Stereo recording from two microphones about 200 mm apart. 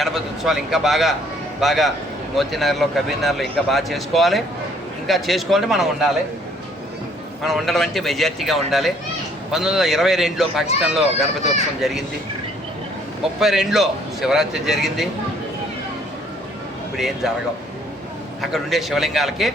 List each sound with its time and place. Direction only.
0.0 s speech: centre (ahead or behind)
7.4 s speech: centre (ahead or behind)
13.4 s speech: centre (ahead or behind)
18.5 s speech: centre (ahead or behind)